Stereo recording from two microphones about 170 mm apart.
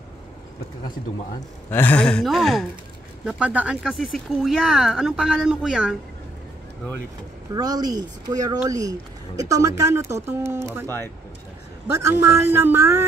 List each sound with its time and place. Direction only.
1.7 s speech: 10° left (ahead or behind)
7.5 s speech: 25° right (ahead or behind)
11.9 s speech: 15° right (ahead or behind)